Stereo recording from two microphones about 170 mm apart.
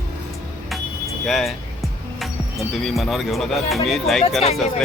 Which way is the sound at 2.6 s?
Centre (ahead or behind).